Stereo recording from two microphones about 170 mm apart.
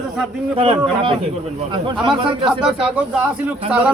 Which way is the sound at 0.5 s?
35° right (ahead or behind).